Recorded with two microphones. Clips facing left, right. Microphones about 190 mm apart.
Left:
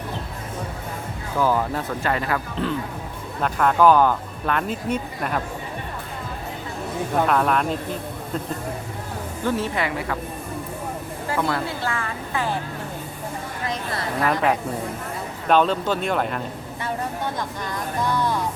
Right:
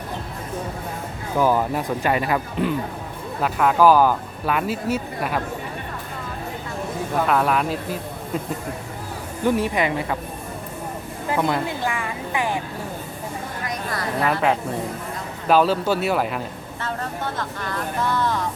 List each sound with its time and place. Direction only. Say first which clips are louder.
1.4 s speech: right 2 dB; 15° right (ahead or behind)
7.3 s speech: right 2 dB; 5° right (ahead or behind)
9.4 s speech: right 4 dB; 15° right (ahead or behind)
11.3 s speech: right 2 dB; 20° right (ahead or behind)
13.7 s a sound: left 1 dB; 25° left (ahead or behind)
15.4 s speech: right 1 dB; 5° right (ahead or behind)
16.8 s speech: left 1 dB; 15° left (ahead or behind)